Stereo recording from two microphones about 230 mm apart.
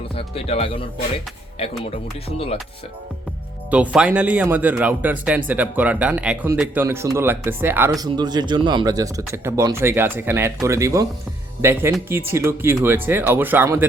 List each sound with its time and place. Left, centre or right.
0.2 s speech: left
3.7 s speech: centre